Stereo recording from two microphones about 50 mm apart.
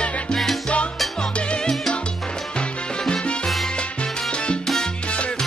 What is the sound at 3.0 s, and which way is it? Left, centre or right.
Salsa music, centre.